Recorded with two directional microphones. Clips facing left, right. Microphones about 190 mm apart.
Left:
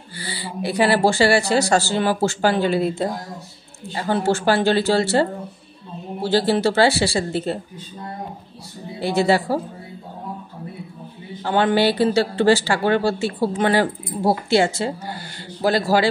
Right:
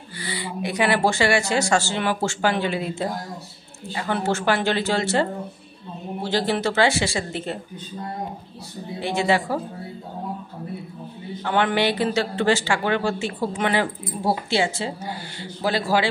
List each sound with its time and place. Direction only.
0.2 s speech: 30° left (ahead or behind)
9.0 s speech: 35° left (ahead or behind)
11.4 s speech: 35° left (ahead or behind)